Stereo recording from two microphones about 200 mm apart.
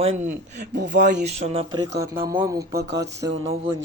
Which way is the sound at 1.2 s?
30° right (ahead or behind).